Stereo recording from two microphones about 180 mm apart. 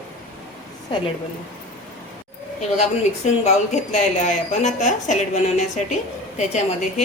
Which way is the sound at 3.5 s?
40° left (ahead or behind).